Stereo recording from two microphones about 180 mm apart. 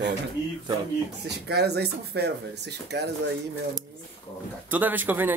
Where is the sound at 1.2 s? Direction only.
65° right (ahead or behind).